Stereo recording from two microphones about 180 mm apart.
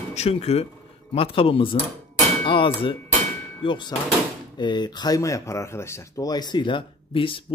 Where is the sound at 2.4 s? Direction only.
30° left (ahead or behind).